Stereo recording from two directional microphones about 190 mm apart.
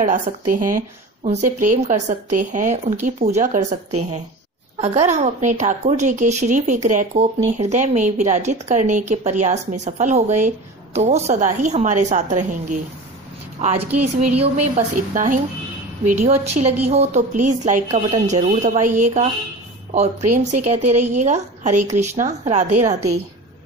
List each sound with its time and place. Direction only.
0.0 s a woman's voice: 45° right (ahead or behind)